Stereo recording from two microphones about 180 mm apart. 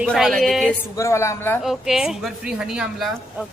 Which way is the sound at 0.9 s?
15° left (ahead or behind).